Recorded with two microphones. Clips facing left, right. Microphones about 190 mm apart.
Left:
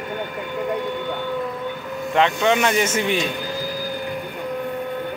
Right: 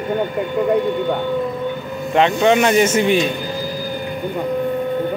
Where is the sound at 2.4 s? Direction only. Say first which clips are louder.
Right 5 dB; 40° right (ahead or behind).